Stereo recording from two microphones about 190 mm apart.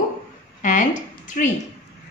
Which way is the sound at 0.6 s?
40° left (ahead or behind).